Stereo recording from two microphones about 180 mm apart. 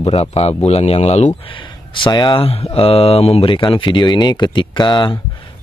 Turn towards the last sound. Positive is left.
turn(degrees=25)  # may be behind; listen again after turning